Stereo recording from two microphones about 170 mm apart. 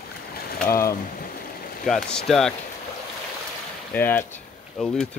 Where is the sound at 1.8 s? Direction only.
5° left (ahead or behind).